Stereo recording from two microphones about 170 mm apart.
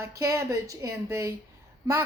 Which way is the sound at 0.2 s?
20° right (ahead or behind).